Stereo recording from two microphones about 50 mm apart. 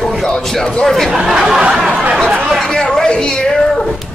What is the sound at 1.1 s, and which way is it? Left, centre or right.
Speech, centre.